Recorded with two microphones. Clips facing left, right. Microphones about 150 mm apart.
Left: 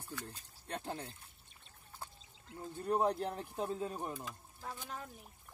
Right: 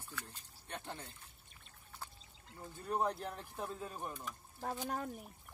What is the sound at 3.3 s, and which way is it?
Speech, 20° left (ahead or behind).